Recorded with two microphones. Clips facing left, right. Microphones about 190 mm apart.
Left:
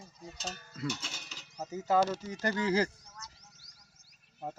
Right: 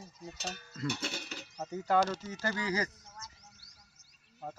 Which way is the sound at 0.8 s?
60° right (ahead or behind).